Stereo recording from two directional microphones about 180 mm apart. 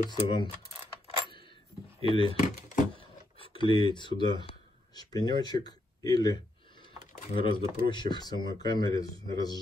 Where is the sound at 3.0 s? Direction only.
30° left (ahead or behind).